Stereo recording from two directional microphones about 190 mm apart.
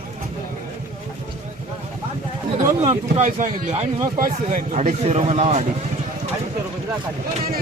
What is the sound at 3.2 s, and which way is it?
A man's voice, 45° right (ahead or behind).